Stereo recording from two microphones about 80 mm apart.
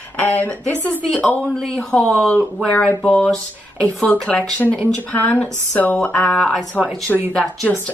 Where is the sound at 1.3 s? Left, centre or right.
Centre.